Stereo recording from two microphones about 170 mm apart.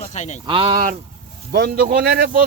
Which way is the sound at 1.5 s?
65° right (ahead or behind).